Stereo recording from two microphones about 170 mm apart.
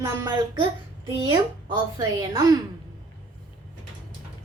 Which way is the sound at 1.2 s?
30° right (ahead or behind).